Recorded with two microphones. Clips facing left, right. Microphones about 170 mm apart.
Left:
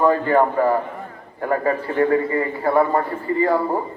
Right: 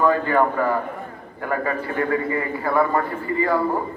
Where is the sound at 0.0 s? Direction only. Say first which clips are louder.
Left 2 dB; 30° left (ahead or behind).